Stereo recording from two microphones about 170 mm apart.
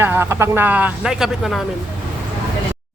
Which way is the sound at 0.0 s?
15° right (ahead or behind).